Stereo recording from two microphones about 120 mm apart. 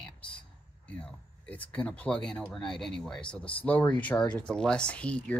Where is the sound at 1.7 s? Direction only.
10° left (ahead or behind).